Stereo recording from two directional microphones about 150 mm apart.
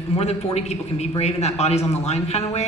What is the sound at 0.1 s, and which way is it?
A man's voice, 45° left (ahead or behind).